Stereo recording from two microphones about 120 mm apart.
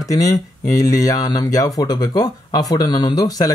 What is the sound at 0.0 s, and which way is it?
Speech, 30° left (ahead or behind).